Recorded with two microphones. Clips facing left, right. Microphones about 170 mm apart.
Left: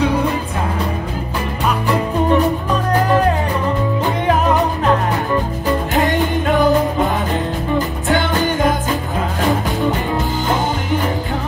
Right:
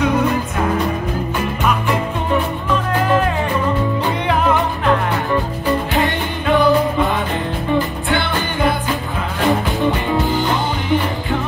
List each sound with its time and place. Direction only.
5.9 s music: 45° left (ahead or behind)
8.1 s music: 45° left (ahead or behind)